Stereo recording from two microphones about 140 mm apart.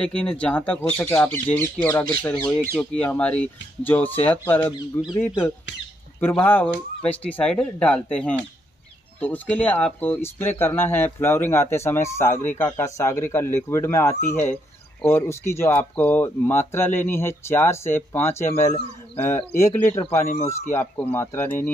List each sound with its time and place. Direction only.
0.0 s speech: 5° left (ahead or behind)
6.1 s speech: 15° left (ahead or behind)
21.1 s speech: 15° left (ahead or behind)